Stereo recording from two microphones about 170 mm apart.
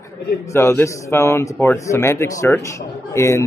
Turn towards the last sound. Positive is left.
turn(degrees=15)  # may be behind; listen again after turning